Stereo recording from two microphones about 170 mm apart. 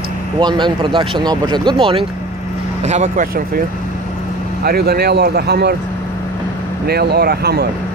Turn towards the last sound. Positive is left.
turn(degrees=-70)  # may be behind; listen again after turning